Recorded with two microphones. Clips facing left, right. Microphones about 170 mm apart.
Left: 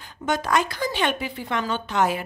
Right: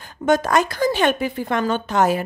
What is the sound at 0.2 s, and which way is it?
Speech, 45° right (ahead or behind).